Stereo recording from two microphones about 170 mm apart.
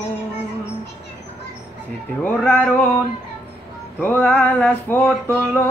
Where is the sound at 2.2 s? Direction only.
10° left (ahead or behind).